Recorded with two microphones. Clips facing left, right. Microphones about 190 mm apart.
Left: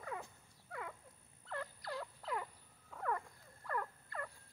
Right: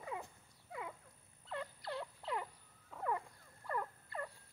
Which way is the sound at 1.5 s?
20° right (ahead or behind).